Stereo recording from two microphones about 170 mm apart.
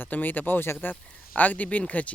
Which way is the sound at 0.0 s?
10° left (ahead or behind).